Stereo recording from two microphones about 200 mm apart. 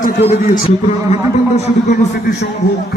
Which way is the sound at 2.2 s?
50° left (ahead or behind).